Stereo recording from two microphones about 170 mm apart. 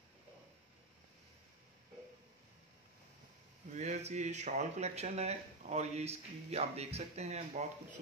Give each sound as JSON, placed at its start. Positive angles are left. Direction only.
{"t": 3.7, "sound": "speech", "side_deg": -40}